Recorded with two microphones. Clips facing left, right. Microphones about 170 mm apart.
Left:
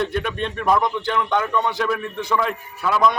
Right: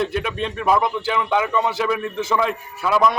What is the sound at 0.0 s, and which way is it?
Speech, centre (ahead or behind).